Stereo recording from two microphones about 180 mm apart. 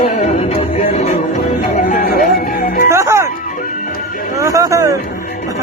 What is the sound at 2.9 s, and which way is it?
Music, 15° right (ahead or behind).